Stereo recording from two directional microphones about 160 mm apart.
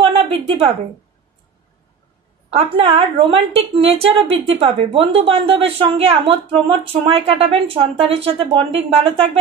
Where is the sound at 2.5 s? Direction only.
40° right (ahead or behind).